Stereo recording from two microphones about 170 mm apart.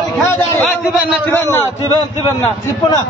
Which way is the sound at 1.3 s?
15° left (ahead or behind).